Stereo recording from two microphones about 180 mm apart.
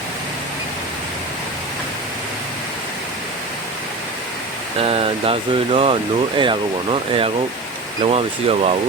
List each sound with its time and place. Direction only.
4.8 s speech: 30° right (ahead or behind)
8.0 s speech: 35° right (ahead or behind)